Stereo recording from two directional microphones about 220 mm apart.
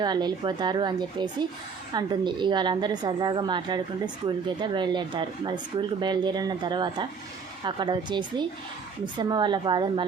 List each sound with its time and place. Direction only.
0.0 s a woman's voice: 20° right (ahead or behind)